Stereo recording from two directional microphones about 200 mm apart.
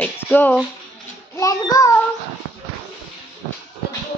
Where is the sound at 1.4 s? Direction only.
15° left (ahead or behind).